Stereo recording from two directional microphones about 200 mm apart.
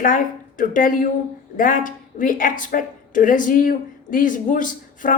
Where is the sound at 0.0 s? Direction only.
40° left (ahead or behind).